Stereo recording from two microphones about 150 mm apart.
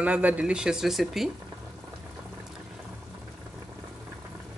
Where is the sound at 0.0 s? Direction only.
10° right (ahead or behind).